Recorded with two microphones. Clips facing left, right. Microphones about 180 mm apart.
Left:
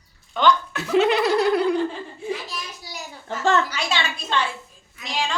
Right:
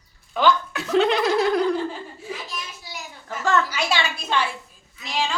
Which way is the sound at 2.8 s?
30° left (ahead or behind).